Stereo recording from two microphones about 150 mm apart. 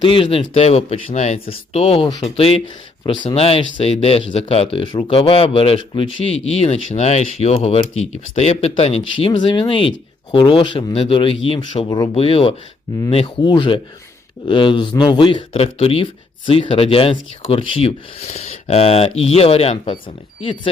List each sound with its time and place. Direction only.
0.0 s speech: 35° left (ahead or behind)
12.1 s speech: 40° left (ahead or behind)